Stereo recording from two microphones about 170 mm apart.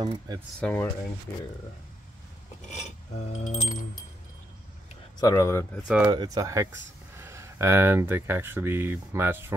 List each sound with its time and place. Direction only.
0.0 s speech: 25° right (ahead or behind)
0.6 s speech: 5° left (ahead or behind)
2.7 s a sound: 45° left (ahead or behind)
5.2 s speech: 15° left (ahead or behind)
6.1 s speech: 20° right (ahead or behind)